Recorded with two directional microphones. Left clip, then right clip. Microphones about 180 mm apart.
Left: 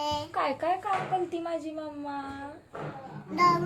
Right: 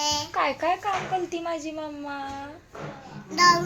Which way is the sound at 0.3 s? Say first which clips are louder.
Right 4 dB; 25° right (ahead or behind).